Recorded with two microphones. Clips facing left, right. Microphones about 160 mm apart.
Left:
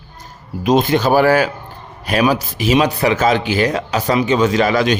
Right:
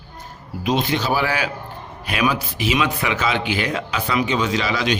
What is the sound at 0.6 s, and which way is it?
A man's voice, 45° left (ahead or behind).